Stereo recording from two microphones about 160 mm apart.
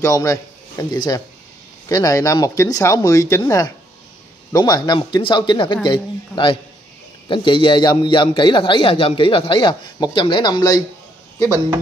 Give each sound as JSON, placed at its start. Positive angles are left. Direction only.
{"t": 0.0, "sound": "a man's voice", "side_deg": 20}